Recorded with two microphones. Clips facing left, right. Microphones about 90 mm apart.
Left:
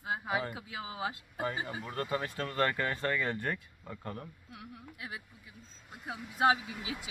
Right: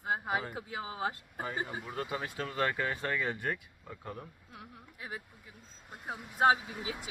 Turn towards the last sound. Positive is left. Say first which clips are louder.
# right 1 dB
turn(degrees=-35)  # may be behind; listen again after turning